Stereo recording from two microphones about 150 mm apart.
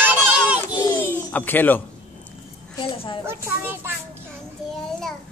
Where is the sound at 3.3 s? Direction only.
15° right (ahead or behind).